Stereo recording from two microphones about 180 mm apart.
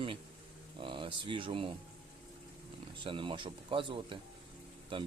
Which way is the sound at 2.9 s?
25° right (ahead or behind).